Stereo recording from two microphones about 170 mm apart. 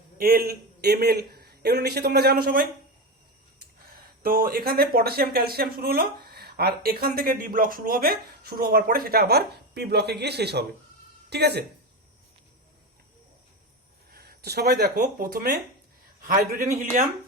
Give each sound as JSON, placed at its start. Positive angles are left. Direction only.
{"t": 0.2, "sound": "a man's voice", "side_deg": -60}
{"t": 4.2, "sound": "a man's voice", "side_deg": -60}
{"t": 14.1, "sound": "speech", "side_deg": -65}
{"t": 16.8, "sound": "speech", "side_deg": -50}